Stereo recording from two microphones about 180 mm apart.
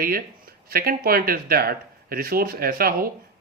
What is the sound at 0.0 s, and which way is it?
Speech, 55° right (ahead or behind).